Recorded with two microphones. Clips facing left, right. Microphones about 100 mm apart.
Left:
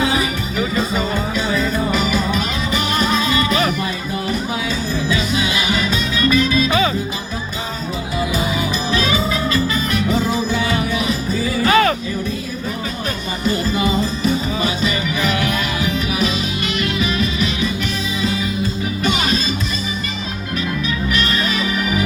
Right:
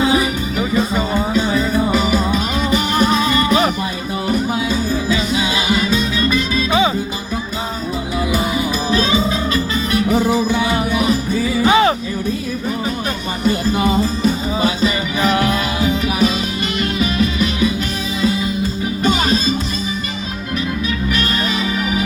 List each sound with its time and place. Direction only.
1.3 s music: 30° right (ahead or behind)
4.3 s music: 45° right (ahead or behind)
6.7 s music: 20° right (ahead or behind)
8.9 s music: 30° right (ahead or behind)
10.1 s music: 60° right (ahead or behind)
11.6 s music: 20° right (ahead or behind)
13.7 s music: 40° right (ahead or behind)
19.0 s music: 40° right (ahead or behind)